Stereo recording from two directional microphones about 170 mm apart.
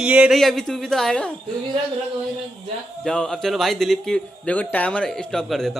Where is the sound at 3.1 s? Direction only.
5° left (ahead or behind).